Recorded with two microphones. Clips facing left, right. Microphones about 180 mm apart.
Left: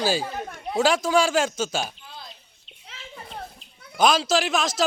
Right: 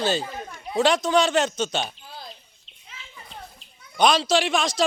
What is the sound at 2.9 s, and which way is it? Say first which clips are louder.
Children playing: left 5 dB; 50° left (ahead or behind).